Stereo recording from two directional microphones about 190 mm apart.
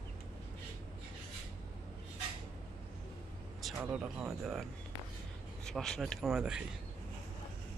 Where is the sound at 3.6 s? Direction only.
Centre (ahead or behind).